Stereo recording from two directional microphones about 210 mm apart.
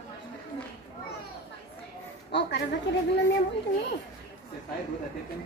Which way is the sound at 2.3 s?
55° left (ahead or behind).